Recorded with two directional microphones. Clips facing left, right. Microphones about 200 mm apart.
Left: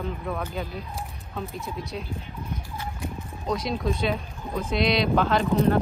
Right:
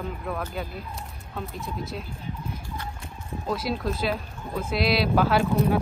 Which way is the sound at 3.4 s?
5° right (ahead or behind).